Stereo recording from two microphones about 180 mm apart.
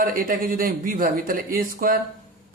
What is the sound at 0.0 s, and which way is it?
Speech, 50° right (ahead or behind).